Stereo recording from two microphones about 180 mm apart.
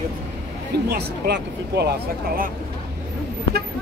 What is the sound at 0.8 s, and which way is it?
Speech, 65° right (ahead or behind).